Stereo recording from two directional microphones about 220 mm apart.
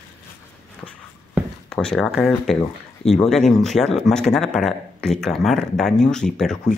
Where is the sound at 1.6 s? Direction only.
5° left (ahead or behind).